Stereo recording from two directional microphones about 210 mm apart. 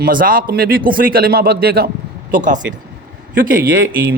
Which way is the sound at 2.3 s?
35° right (ahead or behind).